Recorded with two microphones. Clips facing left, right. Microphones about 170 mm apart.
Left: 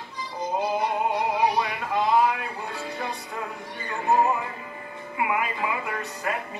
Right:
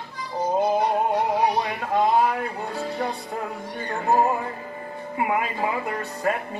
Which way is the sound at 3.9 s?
35° right (ahead or behind).